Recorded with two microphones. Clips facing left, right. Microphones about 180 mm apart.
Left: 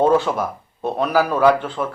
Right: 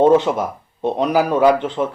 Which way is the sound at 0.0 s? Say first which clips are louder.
Right 3 dB; 20° right (ahead or behind).